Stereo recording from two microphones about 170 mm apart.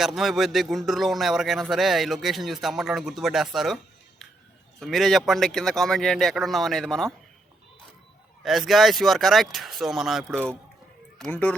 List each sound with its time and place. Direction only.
0.0 s a man's voice: centre (ahead or behind)
4.8 s a man's voice: centre (ahead or behind)
8.4 s a man's voice: centre (ahead or behind)
11.2 s speech: 10° left (ahead or behind)